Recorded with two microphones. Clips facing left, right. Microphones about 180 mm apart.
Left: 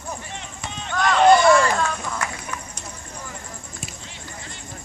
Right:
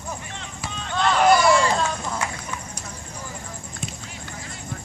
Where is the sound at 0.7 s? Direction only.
25° left (ahead or behind).